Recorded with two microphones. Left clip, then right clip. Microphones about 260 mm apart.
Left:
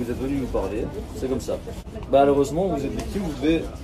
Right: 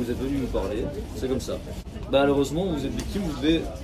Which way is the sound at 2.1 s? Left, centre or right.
Centre.